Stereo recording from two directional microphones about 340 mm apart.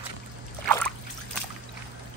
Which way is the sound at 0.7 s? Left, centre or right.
Centre.